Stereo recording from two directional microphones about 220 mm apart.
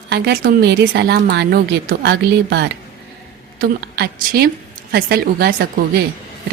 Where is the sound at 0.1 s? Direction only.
45° right (ahead or behind).